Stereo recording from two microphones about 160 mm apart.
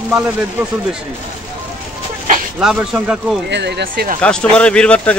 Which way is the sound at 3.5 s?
90° right.